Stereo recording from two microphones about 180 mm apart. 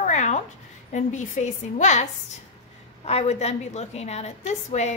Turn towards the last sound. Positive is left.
turn(degrees=40)  # may be behind; listen again after turning